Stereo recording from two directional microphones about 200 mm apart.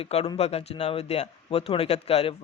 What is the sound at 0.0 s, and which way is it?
Speech, 30° left (ahead or behind).